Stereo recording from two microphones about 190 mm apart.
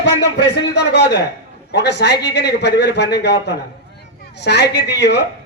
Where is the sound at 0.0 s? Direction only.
65° left (ahead or behind).